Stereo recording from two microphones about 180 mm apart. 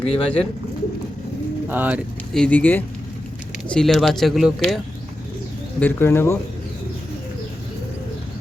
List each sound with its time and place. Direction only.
0.0 s speech: 35° left (ahead or behind)
1.7 s speech: 10° right (ahead or behind)
2.3 s speech: 5° left (ahead or behind)
5.8 s speech: 15° left (ahead or behind)